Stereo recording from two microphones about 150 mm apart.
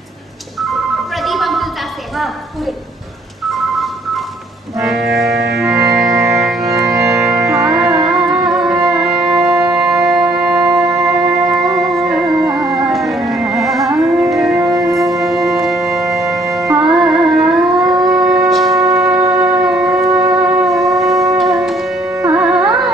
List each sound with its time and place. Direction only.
0.6 s music: centre (ahead or behind)
2.1 s a woman's voice: centre (ahead or behind)
3.4 s a sound: centre (ahead or behind)
4.7 s music: centre (ahead or behind)
18.4 s wind instrument: centre (ahead or behind)
19.0 s music: 20° right (ahead or behind)
19.6 s shofar: 5° right (ahead or behind)
20.1 s shofar: 25° right (ahead or behind)
20.4 s shofar: 5° right (ahead or behind)
21.4 s music: centre (ahead or behind)
22.1 s music: 20° right (ahead or behind)
22.4 s carnatic music: 5° right (ahead or behind)